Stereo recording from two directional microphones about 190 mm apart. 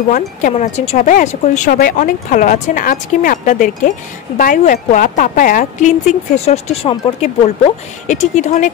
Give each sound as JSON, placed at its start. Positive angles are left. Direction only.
{"t": 0.1, "sound": "a woman's voice", "side_deg": 40}